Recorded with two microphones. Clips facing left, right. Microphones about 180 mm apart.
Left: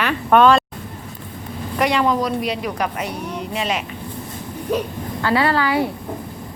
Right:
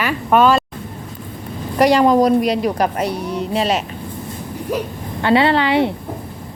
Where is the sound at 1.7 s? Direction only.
40° right (ahead or behind).